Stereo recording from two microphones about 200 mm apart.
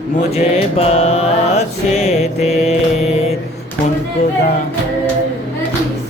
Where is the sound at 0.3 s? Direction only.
30° left (ahead or behind).